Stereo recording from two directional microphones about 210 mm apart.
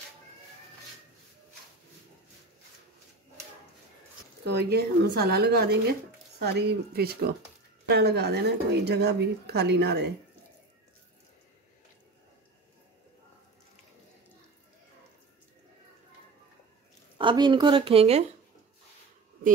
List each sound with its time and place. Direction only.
4.5 s speech: 50° right (ahead or behind)
17.2 s speech: 25° right (ahead or behind)